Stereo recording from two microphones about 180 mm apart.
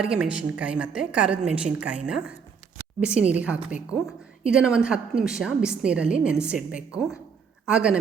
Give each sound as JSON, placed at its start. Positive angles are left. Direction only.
{"t": 0.0, "sound": "a woman's voice", "side_deg": -5}